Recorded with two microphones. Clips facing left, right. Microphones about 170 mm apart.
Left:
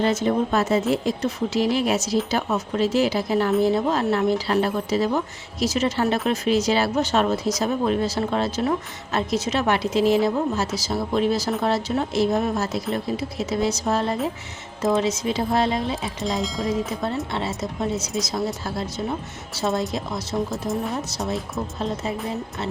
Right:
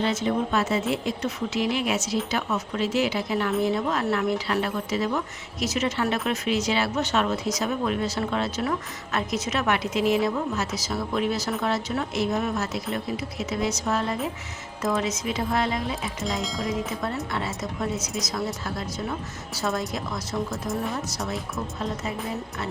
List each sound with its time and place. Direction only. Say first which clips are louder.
0.0 s speech: left 4 dB; 45° left (ahead or behind)
16.2 s speech: left 4 dB; centre (ahead or behind)
17.3 s a woman's voice: left 3 dB; 25° left (ahead or behind)